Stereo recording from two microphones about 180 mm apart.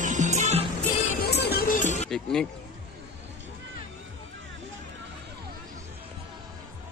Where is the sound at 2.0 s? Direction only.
5° left (ahead or behind).